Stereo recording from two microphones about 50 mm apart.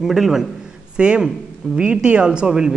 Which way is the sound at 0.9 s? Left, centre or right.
Centre.